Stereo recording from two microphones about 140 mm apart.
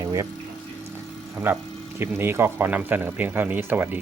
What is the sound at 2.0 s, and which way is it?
Speech, 15° right (ahead or behind).